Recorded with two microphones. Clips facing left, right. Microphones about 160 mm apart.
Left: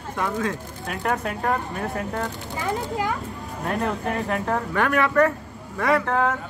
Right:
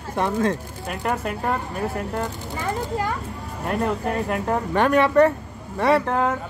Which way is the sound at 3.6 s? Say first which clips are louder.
Right 2 dB; 5° right (ahead or behind).